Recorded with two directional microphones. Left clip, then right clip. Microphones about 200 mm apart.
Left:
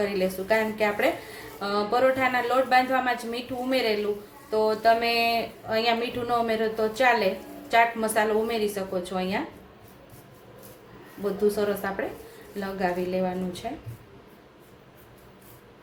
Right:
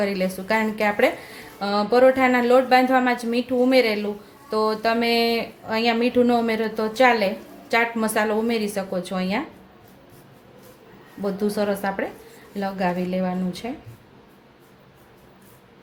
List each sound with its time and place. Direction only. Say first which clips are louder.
0.0 s a woman's voice: right 2 dB; 45° right (ahead or behind)
11.2 s speech: right 1 dB; 40° right (ahead or behind)